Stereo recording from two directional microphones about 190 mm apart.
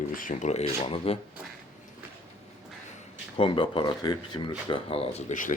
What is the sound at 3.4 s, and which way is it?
Speech, 25° left (ahead or behind).